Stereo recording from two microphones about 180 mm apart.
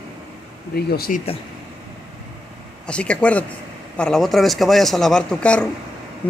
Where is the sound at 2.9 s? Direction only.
5° left (ahead or behind).